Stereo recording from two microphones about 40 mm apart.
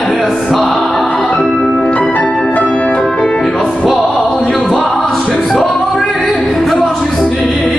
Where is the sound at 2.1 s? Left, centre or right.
Left.